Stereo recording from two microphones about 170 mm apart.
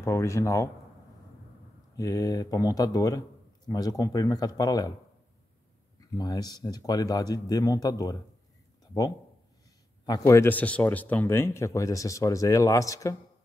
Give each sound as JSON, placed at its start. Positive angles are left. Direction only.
{"t": 0.0, "sound": "speech", "side_deg": 15}
{"t": 2.0, "sound": "speech", "side_deg": 20}
{"t": 5.9, "sound": "speech", "side_deg": 25}
{"t": 10.0, "sound": "speech", "side_deg": 20}